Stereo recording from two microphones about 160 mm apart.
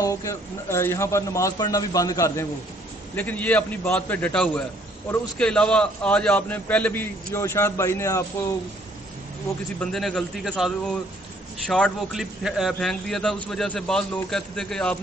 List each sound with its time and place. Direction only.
0.0 s a man's voice: 20° left (ahead or behind)
9.8 s a man's voice: centre (ahead or behind)